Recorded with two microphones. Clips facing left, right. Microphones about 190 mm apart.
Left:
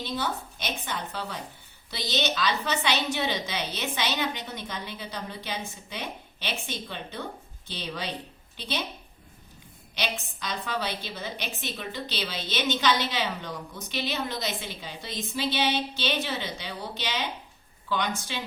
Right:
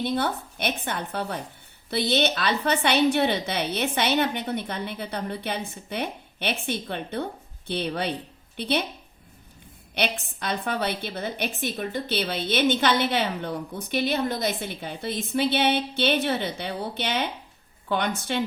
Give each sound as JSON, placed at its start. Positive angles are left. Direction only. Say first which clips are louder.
{"t": 0.0, "sound": "a woman's voice", "louder": "right 5 dB", "side_deg": -60}
{"t": 9.9, "sound": "a woman's voice", "louder": "right 5 dB", "side_deg": -60}